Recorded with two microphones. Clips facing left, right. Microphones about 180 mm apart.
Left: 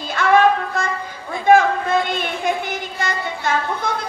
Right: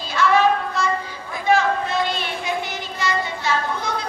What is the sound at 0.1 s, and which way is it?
Music, 55° left (ahead or behind).